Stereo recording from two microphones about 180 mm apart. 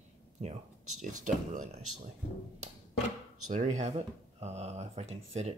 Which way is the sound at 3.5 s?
40° right (ahead or behind).